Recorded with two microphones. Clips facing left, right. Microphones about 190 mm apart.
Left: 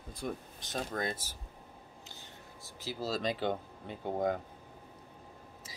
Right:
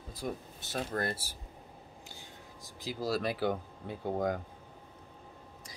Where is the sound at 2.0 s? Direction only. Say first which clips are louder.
Right 1 dB; 10° right (ahead or behind).